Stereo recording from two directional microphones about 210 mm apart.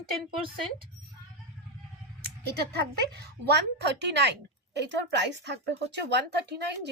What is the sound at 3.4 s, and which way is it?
A woman's voice, 55° right (ahead or behind).